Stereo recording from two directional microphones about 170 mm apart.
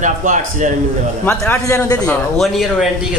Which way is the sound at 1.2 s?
10° left (ahead or behind).